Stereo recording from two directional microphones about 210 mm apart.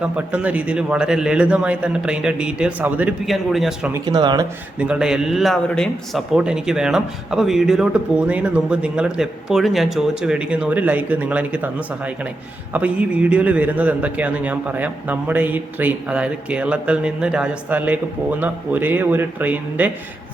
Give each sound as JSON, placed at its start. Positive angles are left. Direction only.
{"t": 0.0, "sound": "a man's voice", "side_deg": -5}
{"t": 3.9, "sound": "speech", "side_deg": -20}
{"t": 4.8, "sound": "a man's voice", "side_deg": -5}